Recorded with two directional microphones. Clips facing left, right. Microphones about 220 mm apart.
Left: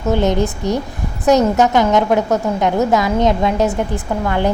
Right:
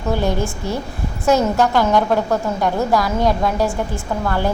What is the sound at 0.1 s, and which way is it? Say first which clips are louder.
A woman's voice: left 4 dB; 20° left (ahead or behind).